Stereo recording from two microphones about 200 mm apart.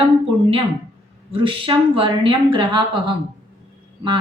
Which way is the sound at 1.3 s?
25° right (ahead or behind).